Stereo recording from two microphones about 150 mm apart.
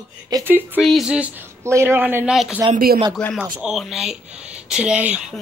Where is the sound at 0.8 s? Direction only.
Centre (ahead or behind).